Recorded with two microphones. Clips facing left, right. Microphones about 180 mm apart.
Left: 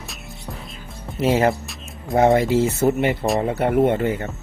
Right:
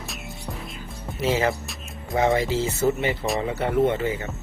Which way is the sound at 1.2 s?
55° left (ahead or behind).